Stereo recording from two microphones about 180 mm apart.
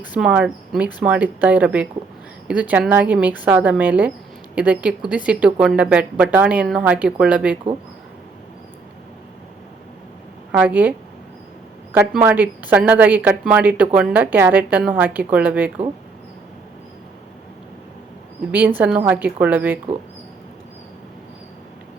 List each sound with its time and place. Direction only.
0.1 s a woman's voice: 5° right (ahead or behind)
10.5 s a woman's voice: 10° right (ahead or behind)
11.9 s a woman's voice: 10° right (ahead or behind)
18.5 s a woman's voice: 10° right (ahead or behind)